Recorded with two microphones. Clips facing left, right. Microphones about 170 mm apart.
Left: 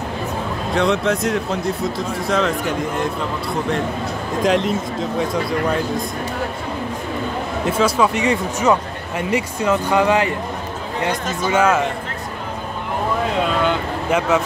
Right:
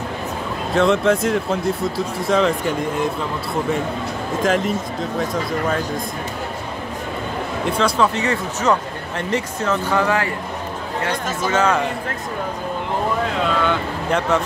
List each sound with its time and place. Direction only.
0.7 s a man's voice: centre (ahead or behind)
4.4 s a man's voice: centre (ahead or behind)
7.6 s speech: 5° left (ahead or behind)
11.6 s a man's voice: 5° left (ahead or behind)
13.7 s speech: 5° left (ahead or behind)